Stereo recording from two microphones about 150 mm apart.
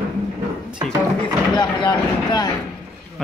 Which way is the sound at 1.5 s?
30° left (ahead or behind).